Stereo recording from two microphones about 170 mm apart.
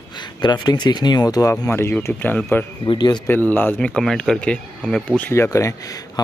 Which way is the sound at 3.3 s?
10° left (ahead or behind).